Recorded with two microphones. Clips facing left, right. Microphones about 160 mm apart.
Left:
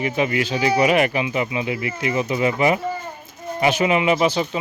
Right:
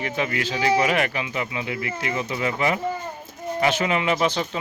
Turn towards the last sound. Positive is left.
turn(degrees=5)  # may be behind; listen again after turning